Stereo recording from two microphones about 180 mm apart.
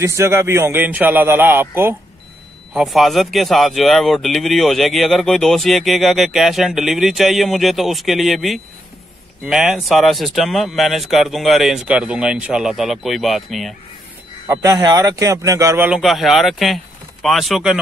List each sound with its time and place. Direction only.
0.0 s a man's voice: 15° right (ahead or behind)
2.7 s speech: centre (ahead or behind)
14.5 s speech: 20° right (ahead or behind)
15.9 s speech: centre (ahead or behind)